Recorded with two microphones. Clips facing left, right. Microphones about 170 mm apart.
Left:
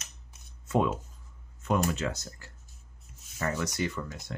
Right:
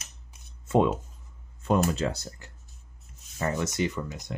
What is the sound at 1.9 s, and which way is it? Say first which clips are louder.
Speech: right 3 dB; 35° right (ahead or behind).